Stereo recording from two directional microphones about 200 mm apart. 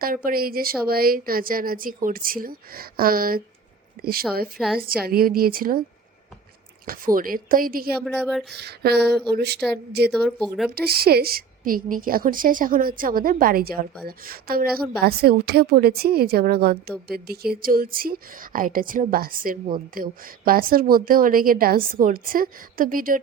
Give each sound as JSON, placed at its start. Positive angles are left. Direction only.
{"t": 0.0, "sound": "a woman's voice", "side_deg": -45}
{"t": 4.5, "sound": "speech", "side_deg": 0}
{"t": 5.0, "sound": "a woman's voice", "side_deg": -50}
{"t": 6.8, "sound": "a woman's voice", "side_deg": -45}
{"t": 8.0, "sound": "speech", "side_deg": 0}
{"t": 8.5, "sound": "a sound", "side_deg": -55}
{"t": 10.1, "sound": "speech", "side_deg": 5}
{"t": 10.8, "sound": "a woman's voice", "side_deg": -50}